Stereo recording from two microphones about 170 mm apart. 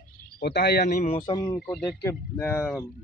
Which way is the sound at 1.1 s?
25° left (ahead or behind).